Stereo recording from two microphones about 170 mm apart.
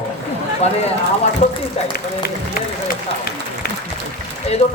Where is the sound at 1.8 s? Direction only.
40° left (ahead or behind).